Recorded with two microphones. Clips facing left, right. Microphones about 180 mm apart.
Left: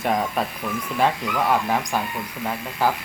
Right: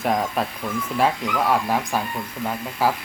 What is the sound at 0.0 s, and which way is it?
Speech, centre (ahead or behind).